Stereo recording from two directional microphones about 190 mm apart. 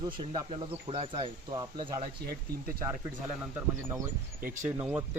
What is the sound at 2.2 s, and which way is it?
Speech, 50° right (ahead or behind).